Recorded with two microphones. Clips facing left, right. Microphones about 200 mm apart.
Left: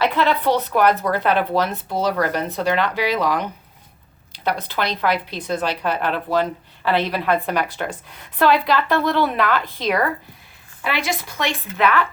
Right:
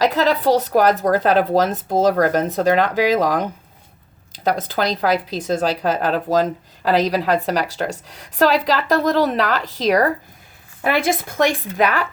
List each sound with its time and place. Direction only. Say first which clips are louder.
0.0 s speech: right 2 dB; 40° right (ahead or behind)